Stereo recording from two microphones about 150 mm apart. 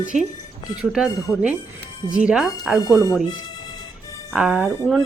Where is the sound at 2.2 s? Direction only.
5° right (ahead or behind).